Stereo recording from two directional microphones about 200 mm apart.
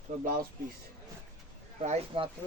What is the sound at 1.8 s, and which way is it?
Speech, 30° right (ahead or behind).